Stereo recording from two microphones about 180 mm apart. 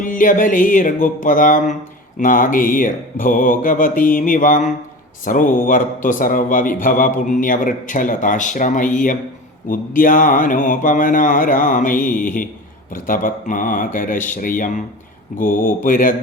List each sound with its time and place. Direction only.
0.0 s a man's voice: 45° left (ahead or behind)